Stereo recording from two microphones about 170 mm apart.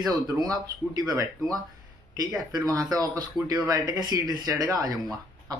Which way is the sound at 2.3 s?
20° right (ahead or behind).